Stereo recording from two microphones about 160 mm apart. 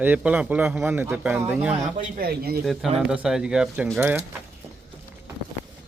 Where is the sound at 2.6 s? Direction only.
Centre (ahead or behind).